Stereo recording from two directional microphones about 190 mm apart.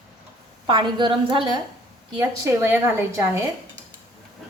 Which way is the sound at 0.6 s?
25° right (ahead or behind).